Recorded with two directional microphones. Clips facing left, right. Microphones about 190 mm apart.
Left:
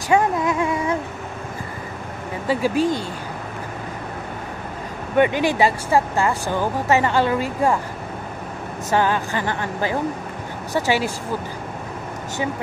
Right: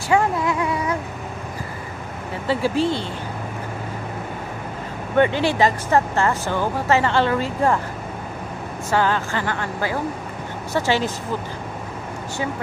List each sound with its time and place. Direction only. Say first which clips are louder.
0.1 s a sound: left 1 dB; 20° left (ahead or behind)
2.4 s speech: left 1 dB; 15° left (ahead or behind)
5.1 s speech: even; 15° left (ahead or behind)
8.9 s speech: left 1 dB; 15° left (ahead or behind)